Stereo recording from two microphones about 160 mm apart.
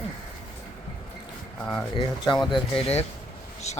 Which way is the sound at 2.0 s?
30° left (ahead or behind).